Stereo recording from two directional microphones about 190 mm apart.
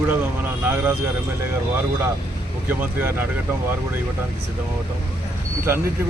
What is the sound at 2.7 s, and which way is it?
Speech, 10° right (ahead or behind).